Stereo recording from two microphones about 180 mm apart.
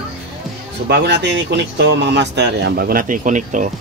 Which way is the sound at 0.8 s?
70° right (ahead or behind).